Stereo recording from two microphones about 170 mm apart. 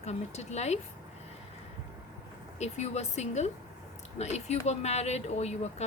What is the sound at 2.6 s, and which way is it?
A woman's voice, 40° left (ahead or behind).